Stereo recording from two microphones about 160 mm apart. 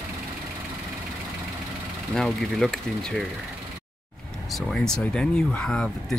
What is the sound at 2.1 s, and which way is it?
Speech, centre (ahead or behind).